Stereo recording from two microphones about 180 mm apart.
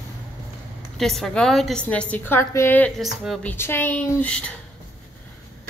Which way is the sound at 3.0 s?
Centre (ahead or behind).